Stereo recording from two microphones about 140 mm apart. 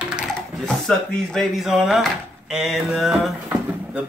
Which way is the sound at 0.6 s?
5° left (ahead or behind).